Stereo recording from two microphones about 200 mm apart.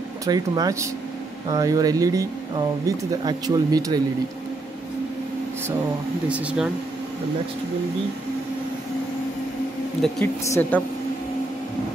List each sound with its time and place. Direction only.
0.2 s speech: 15° right (ahead or behind)
3.3 s speech: 20° right (ahead or behind)
6.2 s speech: 5° right (ahead or behind)
10.0 s a woman's voice: centre (ahead or behind)